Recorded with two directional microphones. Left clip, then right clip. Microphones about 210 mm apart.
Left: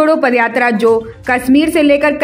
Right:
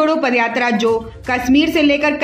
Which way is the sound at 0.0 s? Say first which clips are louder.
Left 4 dB; 15° left (ahead or behind).